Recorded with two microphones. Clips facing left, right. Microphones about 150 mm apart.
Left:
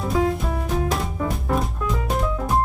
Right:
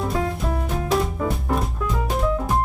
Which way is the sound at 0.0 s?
Centre (ahead or behind).